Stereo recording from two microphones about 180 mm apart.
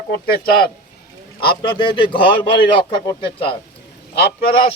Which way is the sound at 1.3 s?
25° left (ahead or behind).